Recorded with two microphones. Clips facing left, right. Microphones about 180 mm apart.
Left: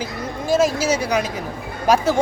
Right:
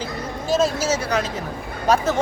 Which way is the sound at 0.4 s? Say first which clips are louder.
Left 2 dB; 10° left (ahead or behind).